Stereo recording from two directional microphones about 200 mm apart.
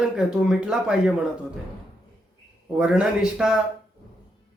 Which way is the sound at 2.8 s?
5° right (ahead or behind).